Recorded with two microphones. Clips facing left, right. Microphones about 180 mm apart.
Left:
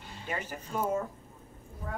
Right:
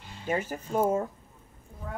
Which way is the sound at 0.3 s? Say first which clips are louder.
Right 7 dB; 45° right (ahead or behind).